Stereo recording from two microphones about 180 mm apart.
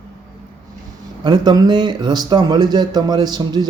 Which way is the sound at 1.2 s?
25° right (ahead or behind).